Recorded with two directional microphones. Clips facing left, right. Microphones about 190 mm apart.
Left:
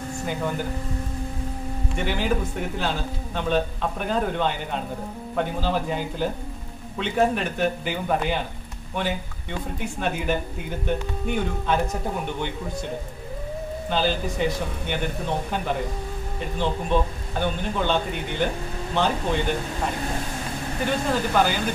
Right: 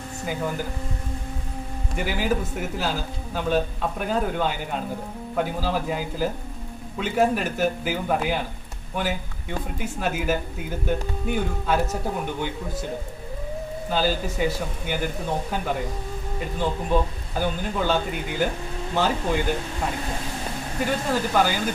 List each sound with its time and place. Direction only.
0.2 s a man's voice: 5° right (ahead or behind)
2.0 s a man's voice: 5° right (ahead or behind)
9.8 s a man's voice: 5° right (ahead or behind)
13.8 s a man's voice: 5° right (ahead or behind)
20.8 s speech: 10° right (ahead or behind)